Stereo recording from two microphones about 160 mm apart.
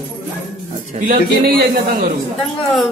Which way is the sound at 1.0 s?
75° right (ahead or behind).